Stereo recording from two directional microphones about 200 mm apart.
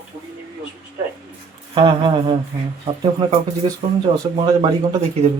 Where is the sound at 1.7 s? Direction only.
25° right (ahead or behind).